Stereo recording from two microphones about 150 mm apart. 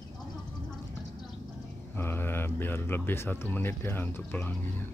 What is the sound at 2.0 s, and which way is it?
Speech, 15° left (ahead or behind).